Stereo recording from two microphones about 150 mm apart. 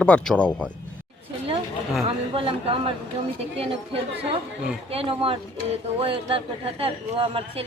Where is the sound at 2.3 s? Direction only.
35° right (ahead or behind).